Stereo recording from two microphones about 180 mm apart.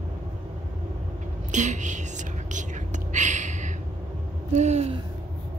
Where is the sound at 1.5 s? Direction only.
40° right (ahead or behind).